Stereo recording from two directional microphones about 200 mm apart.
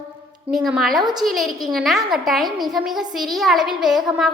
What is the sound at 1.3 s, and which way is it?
A woman's voice, centre (ahead or behind).